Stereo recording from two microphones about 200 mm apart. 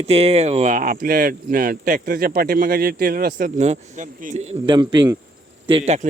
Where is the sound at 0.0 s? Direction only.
30° right (ahead or behind).